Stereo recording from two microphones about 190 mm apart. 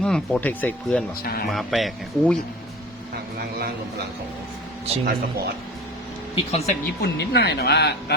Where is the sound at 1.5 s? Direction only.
Centre (ahead or behind).